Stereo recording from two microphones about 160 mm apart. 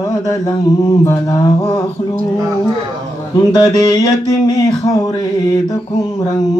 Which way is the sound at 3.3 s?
25° left (ahead or behind).